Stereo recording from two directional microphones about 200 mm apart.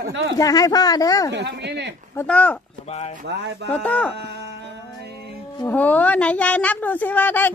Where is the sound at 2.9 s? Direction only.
35° left (ahead or behind).